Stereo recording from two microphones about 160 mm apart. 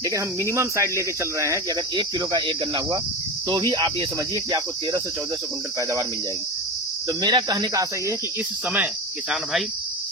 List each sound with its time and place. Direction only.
0.5 s speech: 20° right (ahead or behind)
2.0 s speech: 30° right (ahead or behind)
7.1 s speech: 25° right (ahead or behind)
9.3 s cricket: centre (ahead or behind)